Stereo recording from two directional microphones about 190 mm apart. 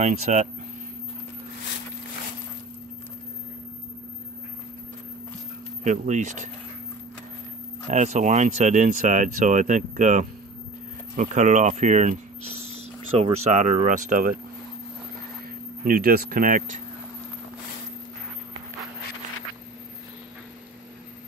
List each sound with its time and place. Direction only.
0.0 s speech: 35° right (ahead or behind)
5.9 s speech: 40° right (ahead or behind)
7.9 s speech: 40° right (ahead or behind)
15.8 s speech: 50° right (ahead or behind)